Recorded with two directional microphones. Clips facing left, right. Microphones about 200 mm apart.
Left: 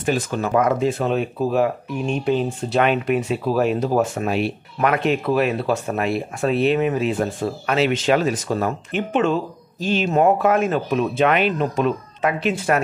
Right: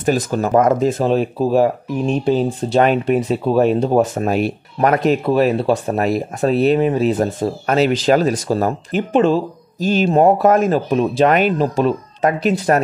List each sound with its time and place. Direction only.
0.0 s speech: 40° right (ahead or behind)